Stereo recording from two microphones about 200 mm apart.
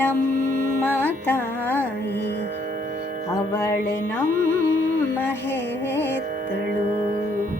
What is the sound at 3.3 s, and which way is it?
Music, 10° left (ahead or behind).